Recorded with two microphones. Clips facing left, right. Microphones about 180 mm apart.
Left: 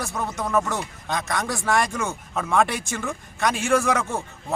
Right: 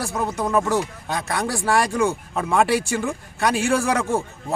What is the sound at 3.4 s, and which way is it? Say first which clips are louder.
Speech: right 1 dB; 35° right (ahead or behind).